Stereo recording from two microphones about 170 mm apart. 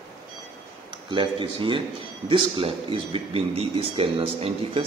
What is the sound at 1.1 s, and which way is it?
Speech, 30° right (ahead or behind).